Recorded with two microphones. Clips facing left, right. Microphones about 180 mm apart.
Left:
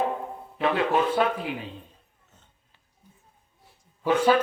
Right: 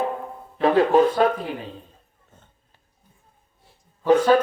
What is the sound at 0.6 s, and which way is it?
Speech, 40° right (ahead or behind).